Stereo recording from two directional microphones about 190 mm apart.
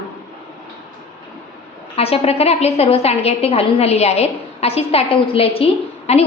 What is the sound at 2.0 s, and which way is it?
A woman's voice, 30° left (ahead or behind).